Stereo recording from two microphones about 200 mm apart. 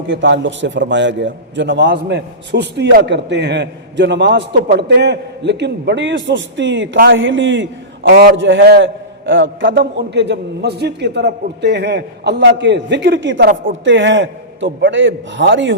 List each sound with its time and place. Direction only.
0.1 s a man's voice: 65° right (ahead or behind)
6.9 s speech: 50° right (ahead or behind)
7.2 s a man's voice: 70° right (ahead or behind); by 8.4 s 50° right (ahead or behind)
8.4 s a man's voice: 65° right (ahead or behind)
9.6 s a man's voice: 55° right (ahead or behind)